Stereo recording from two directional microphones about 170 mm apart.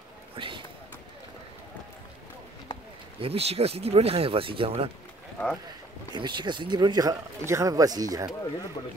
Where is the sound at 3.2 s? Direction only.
35° right (ahead or behind).